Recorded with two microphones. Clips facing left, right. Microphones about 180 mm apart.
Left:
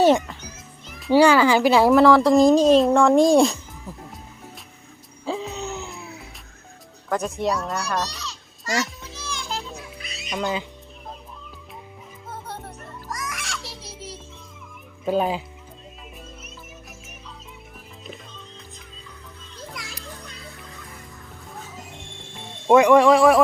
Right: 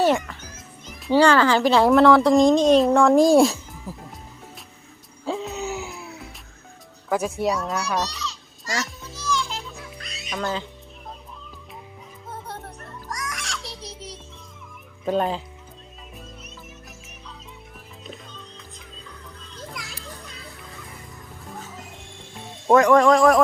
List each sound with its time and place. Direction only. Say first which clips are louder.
0.0 s a child's voice: left 3 dB; 20° left (ahead or behind)
1.1 s speech: left 1 dB; 10° left (ahead or behind)
5.2 s music: right 1 dB; centre (ahead or behind)
7.1 s speech: right 1 dB; 5° right (ahead or behind)
8.1 s a sound: right 3 dB; 50° left (ahead or behind)
9.1 s music: right 9 dB; 60° left (ahead or behind)
10.0 s music: left 1 dB; centre (ahead or behind)
10.4 s speech: left 1 dB; 10° left (ahead or behind)
12.3 s music: even; centre (ahead or behind)
15.0 s speech: left 1 dB; 5° left (ahead or behind)
18.0 s music: even; centre (ahead or behind)
19.5 s music: even; centre (ahead or behind)
22.4 s speech: left 1 dB; centre (ahead or behind)